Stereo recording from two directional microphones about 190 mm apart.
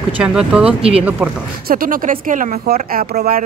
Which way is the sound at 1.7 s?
50° right (ahead or behind).